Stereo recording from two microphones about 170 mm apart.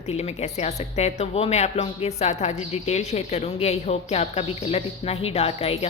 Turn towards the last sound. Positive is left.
turn(degrees=35)  # may be behind; listen again after turning